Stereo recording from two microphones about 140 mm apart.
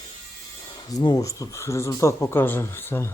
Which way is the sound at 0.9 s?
25° left (ahead or behind).